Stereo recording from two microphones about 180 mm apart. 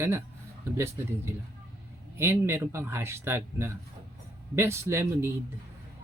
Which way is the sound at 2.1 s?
15° right (ahead or behind).